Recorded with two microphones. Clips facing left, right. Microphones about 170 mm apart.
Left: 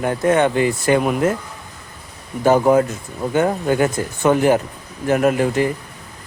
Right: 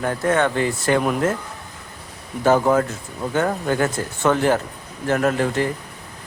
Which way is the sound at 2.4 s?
15° left (ahead or behind).